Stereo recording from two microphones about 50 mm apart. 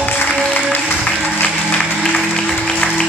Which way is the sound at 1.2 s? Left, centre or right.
Left.